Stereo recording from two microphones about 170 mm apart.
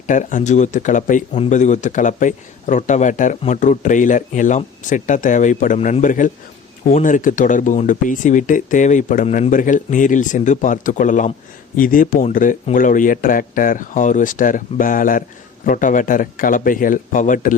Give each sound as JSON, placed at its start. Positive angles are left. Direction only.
{"t": 0.1, "sound": "a man's voice", "side_deg": 50}